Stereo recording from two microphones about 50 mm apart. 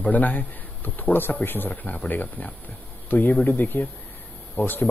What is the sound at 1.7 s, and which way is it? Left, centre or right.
Speech, left.